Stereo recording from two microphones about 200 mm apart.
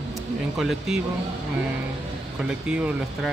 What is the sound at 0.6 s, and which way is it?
Speech, centre (ahead or behind).